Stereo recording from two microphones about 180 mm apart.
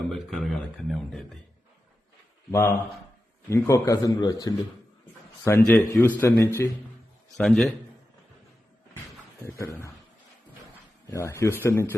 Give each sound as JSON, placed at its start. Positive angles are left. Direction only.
{"t": 0.1, "sound": "speech", "side_deg": 0}
{"t": 2.5, "sound": "a man's voice", "side_deg": 15}
{"t": 7.3, "sound": "speech", "side_deg": 0}
{"t": 9.5, "sound": "speech", "side_deg": 15}
{"t": 11.0, "sound": "speech", "side_deg": 15}